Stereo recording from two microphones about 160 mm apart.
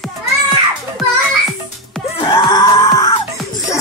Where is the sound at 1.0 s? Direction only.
Centre (ahead or behind).